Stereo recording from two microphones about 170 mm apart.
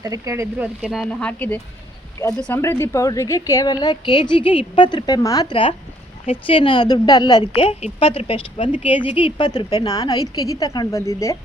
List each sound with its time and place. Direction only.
0.0 s speech: 20° right (ahead or behind)
0.8 s speech: centre (ahead or behind)
1.3 s a woman's voice: 10° left (ahead or behind)